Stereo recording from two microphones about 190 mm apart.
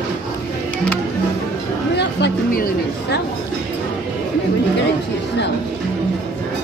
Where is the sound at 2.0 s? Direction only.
60° left (ahead or behind).